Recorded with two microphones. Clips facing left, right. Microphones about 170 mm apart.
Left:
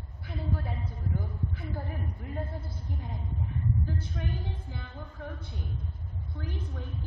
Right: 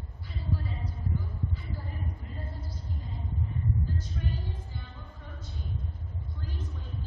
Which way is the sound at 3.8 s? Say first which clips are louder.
Left 1 dB; 60° left (ahead or behind).